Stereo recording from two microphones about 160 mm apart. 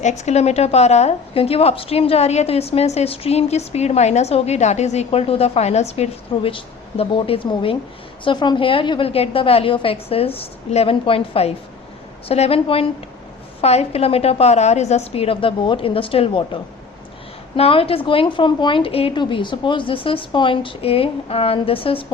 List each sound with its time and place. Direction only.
0.0 s a woman's voice: 45° left (ahead or behind)
17.6 s a woman's voice: 35° left (ahead or behind)